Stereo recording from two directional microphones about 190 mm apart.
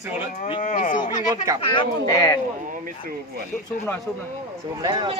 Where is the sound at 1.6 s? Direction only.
25° left (ahead or behind).